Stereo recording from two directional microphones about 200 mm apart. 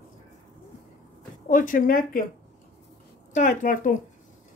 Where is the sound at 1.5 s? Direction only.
45° left (ahead or behind).